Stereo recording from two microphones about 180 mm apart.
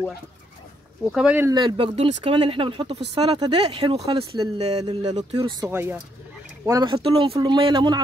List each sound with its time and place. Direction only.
1.1 s speech: 10° right (ahead or behind)
1.5 s speech: 25° right (ahead or behind)
5.3 s speech: 25° right (ahead or behind)
5.7 s speech: 10° right (ahead or behind)